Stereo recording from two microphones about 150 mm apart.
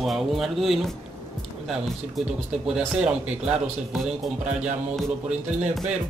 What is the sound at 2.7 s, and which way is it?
A man's voice, 5° right (ahead or behind).